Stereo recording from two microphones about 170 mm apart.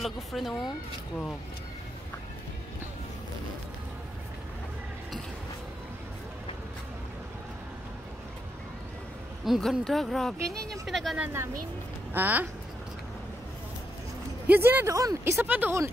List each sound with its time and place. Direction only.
0.0 s speech: centre (ahead or behind)
9.4 s speech: centre (ahead or behind)
11.2 s speech: 15° right (ahead or behind)
14.5 s speech: 10° right (ahead or behind)